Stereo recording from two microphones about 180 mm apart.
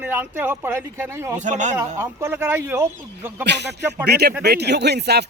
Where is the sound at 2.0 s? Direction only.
15° right (ahead or behind).